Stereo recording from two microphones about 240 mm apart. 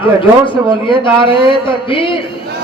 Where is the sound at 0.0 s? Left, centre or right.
Left.